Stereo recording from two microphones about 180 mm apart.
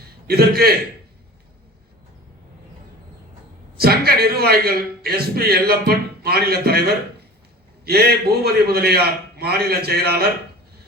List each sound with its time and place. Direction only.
0.3 s a man's voice: 60° right (ahead or behind)
3.8 s a man's voice: 60° right (ahead or behind)